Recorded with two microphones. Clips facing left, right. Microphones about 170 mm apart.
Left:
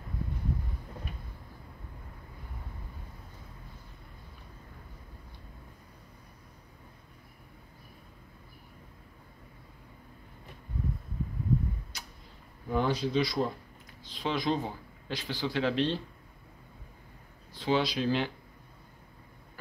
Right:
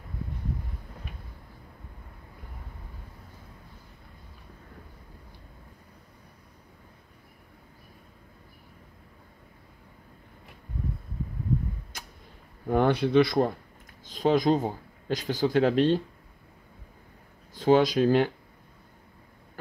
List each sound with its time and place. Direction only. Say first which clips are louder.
12.6 s speech: right 6 dB; 60° right (ahead or behind)
14.0 s speech: right 8 dB; 45° right (ahead or behind)
17.6 s speech: right 8 dB; 45° right (ahead or behind)